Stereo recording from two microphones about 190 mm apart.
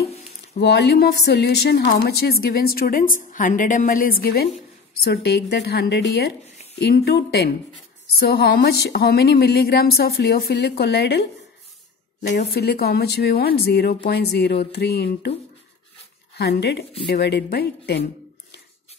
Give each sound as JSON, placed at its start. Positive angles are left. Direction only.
{"t": 0.6, "sound": "a woman's voice", "side_deg": 65}
{"t": 12.4, "sound": "speech", "side_deg": 60}
{"t": 16.3, "sound": "speech", "side_deg": 60}